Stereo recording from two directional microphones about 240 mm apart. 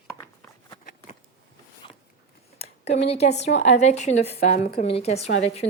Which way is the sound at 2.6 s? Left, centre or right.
Left.